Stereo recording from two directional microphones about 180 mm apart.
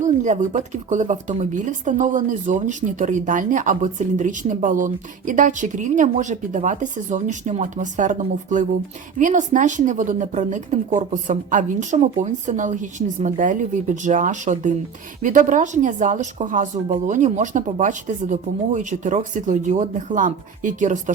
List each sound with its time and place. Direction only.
0.0 s speech: 40° right (ahead or behind)